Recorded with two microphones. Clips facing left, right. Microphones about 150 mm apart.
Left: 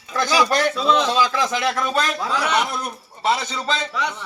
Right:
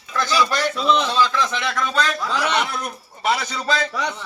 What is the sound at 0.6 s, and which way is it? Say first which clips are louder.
A man's voice: left 1 dB; 10° left (ahead or behind).